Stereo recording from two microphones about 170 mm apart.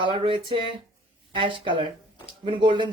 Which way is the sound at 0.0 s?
30° right (ahead or behind).